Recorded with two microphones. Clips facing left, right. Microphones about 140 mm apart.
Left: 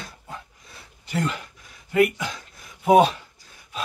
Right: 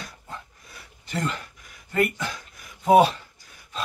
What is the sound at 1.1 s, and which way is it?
Speech, 5° left (ahead or behind).